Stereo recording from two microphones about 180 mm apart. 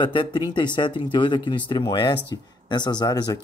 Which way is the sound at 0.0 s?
25° left (ahead or behind).